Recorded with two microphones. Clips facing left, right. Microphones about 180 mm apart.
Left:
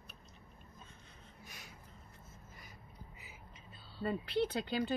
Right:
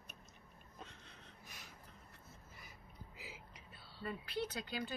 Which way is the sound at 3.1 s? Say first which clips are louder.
Right 2 dB; 85° right.